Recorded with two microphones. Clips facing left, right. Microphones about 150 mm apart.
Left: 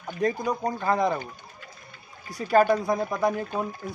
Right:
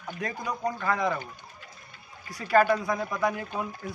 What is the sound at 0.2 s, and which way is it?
Speech, 40° left (ahead or behind).